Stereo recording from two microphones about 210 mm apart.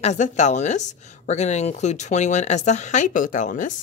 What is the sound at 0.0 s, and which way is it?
Speech, 35° left (ahead or behind).